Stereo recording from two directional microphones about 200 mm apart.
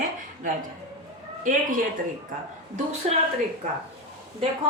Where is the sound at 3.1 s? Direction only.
35° right (ahead or behind).